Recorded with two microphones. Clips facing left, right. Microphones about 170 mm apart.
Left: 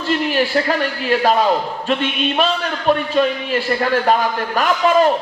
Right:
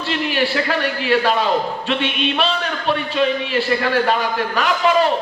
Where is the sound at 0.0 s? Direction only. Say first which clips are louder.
Left 2 dB; 45° left (ahead or behind).